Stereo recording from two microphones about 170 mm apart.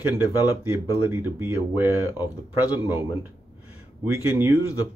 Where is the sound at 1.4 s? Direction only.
10° right (ahead or behind).